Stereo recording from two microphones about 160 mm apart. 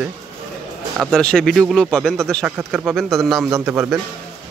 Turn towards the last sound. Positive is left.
turn(degrees=-10)  # may be behind; listen again after turning